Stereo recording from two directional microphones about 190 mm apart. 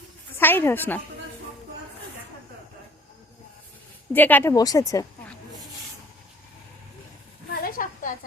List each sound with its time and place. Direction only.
0.3 s speech: 10° left (ahead or behind)
4.1 s speech: 10° left (ahead or behind)
7.5 s a sound: 50° left (ahead or behind)